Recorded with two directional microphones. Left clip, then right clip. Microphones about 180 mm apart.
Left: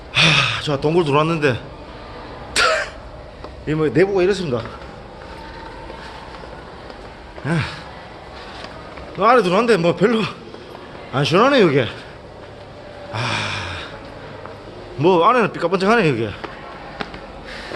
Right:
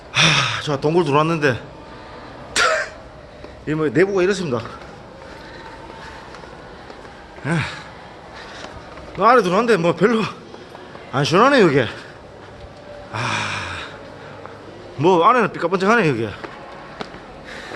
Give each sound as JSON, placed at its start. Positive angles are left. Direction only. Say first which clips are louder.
{"t": 0.1, "sound": "a man's voice", "louder": "left 1 dB", "side_deg": -20}
{"t": 2.5, "sound": "throat clearing", "louder": "left 1 dB", "side_deg": -15}
{"t": 3.7, "sound": "speech", "louder": "left 1 dB", "side_deg": -10}
{"t": 7.4, "sound": "speech", "louder": "even", "side_deg": -15}
{"t": 9.1, "sound": "speech", "louder": "even", "side_deg": -20}
{"t": 13.1, "sound": "gasp", "louder": "even", "side_deg": -15}
{"t": 14.9, "sound": "speech", "louder": "even", "side_deg": -20}